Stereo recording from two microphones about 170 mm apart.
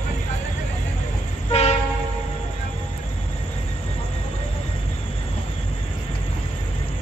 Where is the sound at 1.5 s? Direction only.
40° left (ahead or behind).